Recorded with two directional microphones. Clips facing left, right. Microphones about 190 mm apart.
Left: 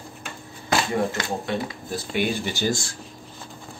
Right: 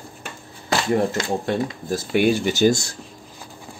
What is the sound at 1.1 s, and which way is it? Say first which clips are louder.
Speech: right 4 dB; 40° right (ahead or behind).